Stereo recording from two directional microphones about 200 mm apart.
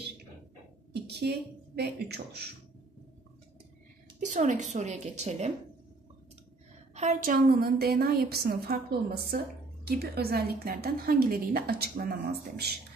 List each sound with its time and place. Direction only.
1.0 s a sound: 55° right (ahead or behind)
1.8 s speech: 55° right (ahead or behind)
4.2 s a woman's voice: 40° right (ahead or behind)
7.0 s a woman's voice: 40° right (ahead or behind)